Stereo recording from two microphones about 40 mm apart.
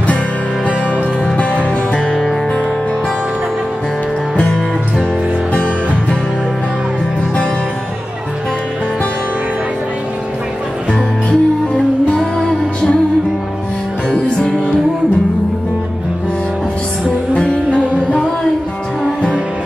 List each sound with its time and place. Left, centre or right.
0.7 s music: left
5.5 s music: left
11.2 s music: centre
17.3 s music: left